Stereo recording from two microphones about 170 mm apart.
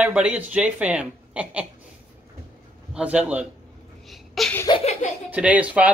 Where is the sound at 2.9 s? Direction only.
5° right (ahead or behind).